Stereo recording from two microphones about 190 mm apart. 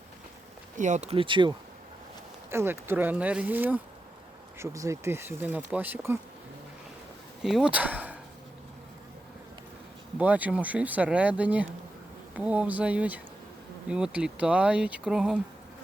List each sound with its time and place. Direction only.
0.8 s speech: 40° right (ahead or behind)
2.5 s speech: 10° right (ahead or behind)
7.4 s speech: 5° right (ahead or behind)
10.2 s speech: 5° right (ahead or behind)